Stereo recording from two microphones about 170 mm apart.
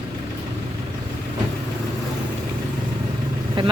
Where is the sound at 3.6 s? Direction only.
30° right (ahead or behind).